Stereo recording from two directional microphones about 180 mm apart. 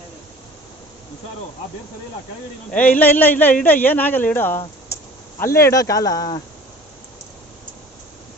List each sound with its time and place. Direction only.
2.7 s a man's voice: 10° left (ahead or behind)